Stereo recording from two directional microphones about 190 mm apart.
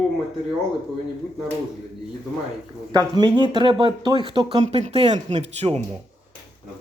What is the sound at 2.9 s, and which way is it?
Speech, 20° right (ahead or behind).